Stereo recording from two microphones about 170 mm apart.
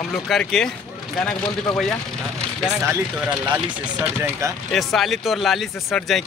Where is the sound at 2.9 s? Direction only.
10° right (ahead or behind).